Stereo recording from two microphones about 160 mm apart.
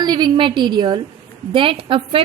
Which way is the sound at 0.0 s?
25° right (ahead or behind).